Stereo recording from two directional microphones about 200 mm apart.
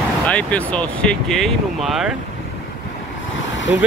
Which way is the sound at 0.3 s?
5° left (ahead or behind).